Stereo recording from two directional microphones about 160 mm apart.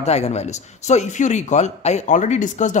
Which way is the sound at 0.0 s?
40° left (ahead or behind).